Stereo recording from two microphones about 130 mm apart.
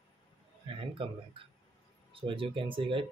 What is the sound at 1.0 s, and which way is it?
Speech, 40° right (ahead or behind).